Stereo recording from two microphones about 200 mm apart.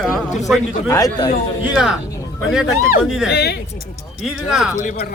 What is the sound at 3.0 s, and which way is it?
Speech, centre (ahead or behind).